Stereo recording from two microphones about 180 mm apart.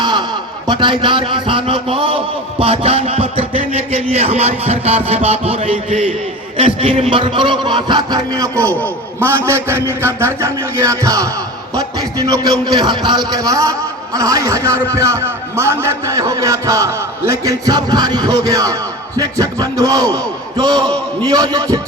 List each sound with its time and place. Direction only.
0.0 s a sound: 25° right (ahead or behind)
0.7 s a man's voice: 25° right (ahead or behind)
9.2 s music: 15° right (ahead or behind)
11.9 s a man's voice: 20° right (ahead or behind)